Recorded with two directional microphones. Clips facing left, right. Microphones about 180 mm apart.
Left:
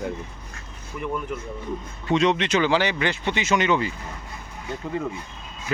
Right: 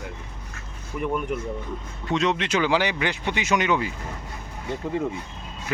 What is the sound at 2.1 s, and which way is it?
Speech, 5° right (ahead or behind).